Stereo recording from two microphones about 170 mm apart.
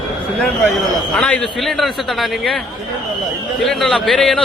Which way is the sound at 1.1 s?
5° left (ahead or behind).